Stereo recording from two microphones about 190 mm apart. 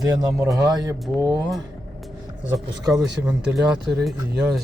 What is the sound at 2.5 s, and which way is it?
Speech, 20° right (ahead or behind).